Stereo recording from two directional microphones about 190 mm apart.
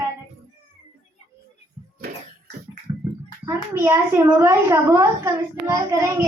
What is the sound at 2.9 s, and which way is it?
Gargling, 20° right (ahead or behind).